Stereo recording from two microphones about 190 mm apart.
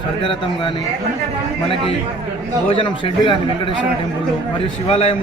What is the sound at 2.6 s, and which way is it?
A man's voice, 25° left (ahead or behind).